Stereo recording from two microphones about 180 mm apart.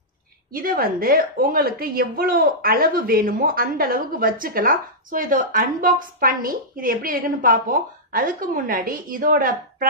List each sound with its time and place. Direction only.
0.5 s a woman's voice: 55° right (ahead or behind)